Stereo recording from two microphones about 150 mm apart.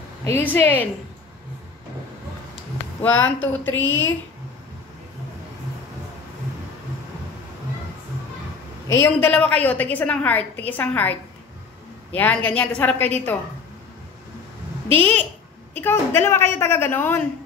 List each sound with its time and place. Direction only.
0.2 s a woman's voice: 15° left (ahead or behind)
3.0 s a woman's voice: 10° left (ahead or behind)
8.8 s a woman's voice: 15° left (ahead or behind)
15.0 s a woman's voice: 10° left (ahead or behind)